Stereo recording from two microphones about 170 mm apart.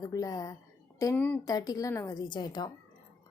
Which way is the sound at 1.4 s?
20° left (ahead or behind).